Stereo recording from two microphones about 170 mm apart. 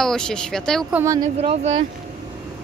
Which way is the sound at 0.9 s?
20° right (ahead or behind).